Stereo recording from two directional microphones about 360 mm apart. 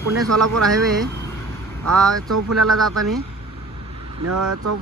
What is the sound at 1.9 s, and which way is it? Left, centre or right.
Speech, right.